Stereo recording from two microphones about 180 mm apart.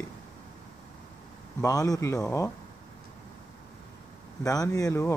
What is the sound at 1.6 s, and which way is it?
Speech, 20° left (ahead or behind).